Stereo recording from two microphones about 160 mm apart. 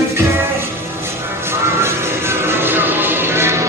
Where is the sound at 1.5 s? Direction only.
15° right (ahead or behind).